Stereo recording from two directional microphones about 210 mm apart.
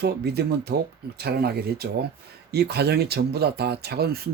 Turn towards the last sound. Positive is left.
turn(degrees=-50)  # may be behind; listen again after turning